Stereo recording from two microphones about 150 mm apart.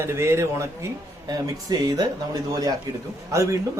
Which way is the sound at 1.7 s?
25° right (ahead or behind).